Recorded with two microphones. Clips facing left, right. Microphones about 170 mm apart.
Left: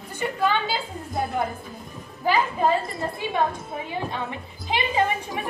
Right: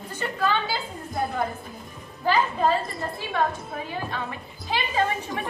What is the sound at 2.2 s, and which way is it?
A woman's voice, 15° left (ahead or behind).